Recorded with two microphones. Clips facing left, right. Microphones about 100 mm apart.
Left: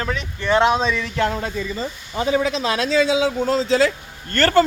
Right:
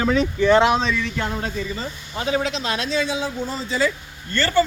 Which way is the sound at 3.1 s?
90° left.